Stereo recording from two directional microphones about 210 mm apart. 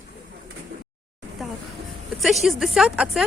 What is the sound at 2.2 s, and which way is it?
Speech, centre (ahead or behind).